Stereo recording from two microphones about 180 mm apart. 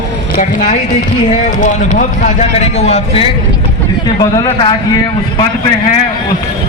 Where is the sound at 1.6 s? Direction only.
45° left (ahead or behind).